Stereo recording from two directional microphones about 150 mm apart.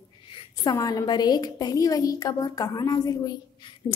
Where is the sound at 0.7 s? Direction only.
25° left (ahead or behind).